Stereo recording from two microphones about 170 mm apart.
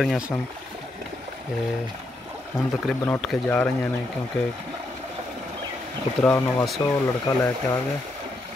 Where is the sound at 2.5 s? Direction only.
Centre (ahead or behind).